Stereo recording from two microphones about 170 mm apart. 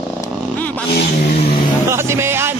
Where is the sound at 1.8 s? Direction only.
15° right (ahead or behind).